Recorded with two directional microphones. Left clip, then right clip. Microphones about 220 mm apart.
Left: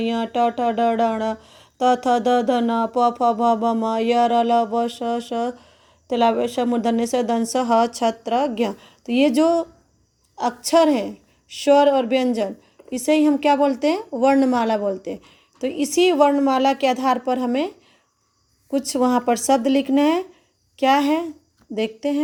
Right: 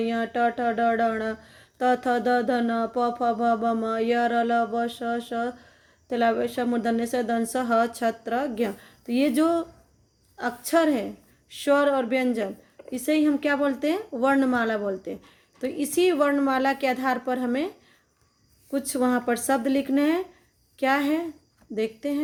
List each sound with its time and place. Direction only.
0.0 s speech: 20° left (ahead or behind)
7.9 s speech: 10° right (ahead or behind)
8.3 s speech: 25° left (ahead or behind)
18.7 s speech: 20° left (ahead or behind)